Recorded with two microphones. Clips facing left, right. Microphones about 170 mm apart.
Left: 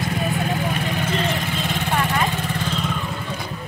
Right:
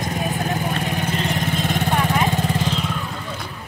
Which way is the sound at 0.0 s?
40° right (ahead or behind).